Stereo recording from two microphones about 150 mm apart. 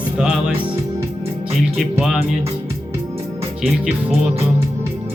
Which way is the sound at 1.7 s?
Centre (ahead or behind).